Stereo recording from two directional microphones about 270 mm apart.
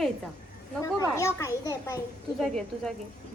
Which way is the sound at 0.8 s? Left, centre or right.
Centre.